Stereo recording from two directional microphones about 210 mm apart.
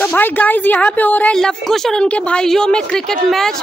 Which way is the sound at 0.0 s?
10° left (ahead or behind).